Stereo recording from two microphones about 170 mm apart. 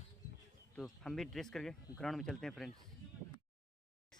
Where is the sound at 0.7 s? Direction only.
5° left (ahead or behind).